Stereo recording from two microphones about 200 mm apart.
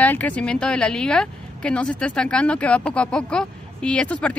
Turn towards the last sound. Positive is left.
turn(degrees=5)  # may be behind; listen again after turning